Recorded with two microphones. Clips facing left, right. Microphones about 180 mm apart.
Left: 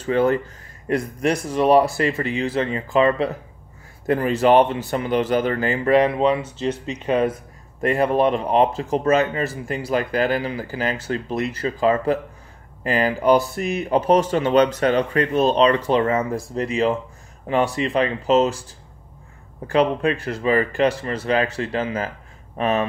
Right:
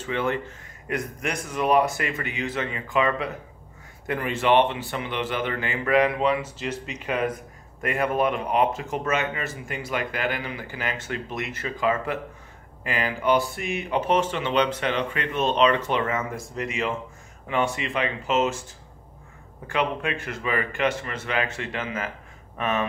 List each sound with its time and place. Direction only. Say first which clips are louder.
0.0 s speech: left 8 dB; 40° left (ahead or behind)
19.7 s speech: left 7 dB; 35° left (ahead or behind)